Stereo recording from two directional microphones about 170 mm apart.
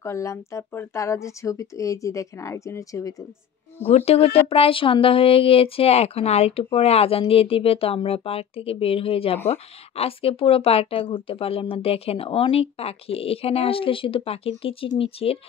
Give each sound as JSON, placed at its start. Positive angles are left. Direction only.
{"t": 0.0, "sound": "speech", "side_deg": 15}
{"t": 3.8, "sound": "speech", "side_deg": 40}